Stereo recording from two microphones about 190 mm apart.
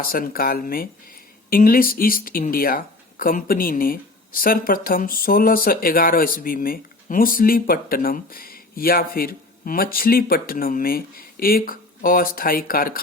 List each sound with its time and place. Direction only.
0.0 s speech: 50° left (ahead or behind)